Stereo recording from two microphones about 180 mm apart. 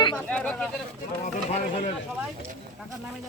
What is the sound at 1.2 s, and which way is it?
Speech, 40° left (ahead or behind).